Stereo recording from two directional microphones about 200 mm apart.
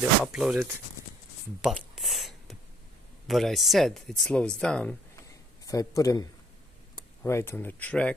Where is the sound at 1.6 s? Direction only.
Centre (ahead or behind).